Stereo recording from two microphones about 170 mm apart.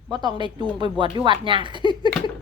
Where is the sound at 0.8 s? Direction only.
30° right (ahead or behind).